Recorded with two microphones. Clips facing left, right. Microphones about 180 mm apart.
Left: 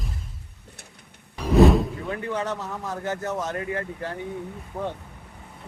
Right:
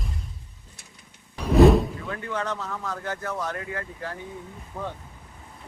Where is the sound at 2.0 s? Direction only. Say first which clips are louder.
Left 2 dB; 20° left (ahead or behind).